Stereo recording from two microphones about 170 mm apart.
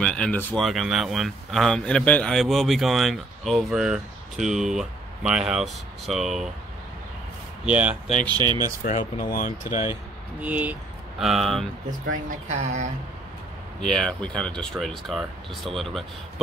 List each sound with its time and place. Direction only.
0.0 s speech: 5° left (ahead or behind)
0.6 s a man's voice: centre (ahead or behind)
7.6 s speech: 10° right (ahead or behind)
8.3 s speech: 25° right (ahead or behind)
8.8 s speech: 50° left (ahead or behind)
10.4 s speech: 10° right (ahead or behind)
12.4 s speech: 45° right (ahead or behind)
13.7 s a man's voice: 5° left (ahead or behind)